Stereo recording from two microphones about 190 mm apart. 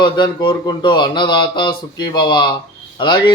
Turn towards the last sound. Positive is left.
turn(degrees=25)  # may be behind; listen again after turning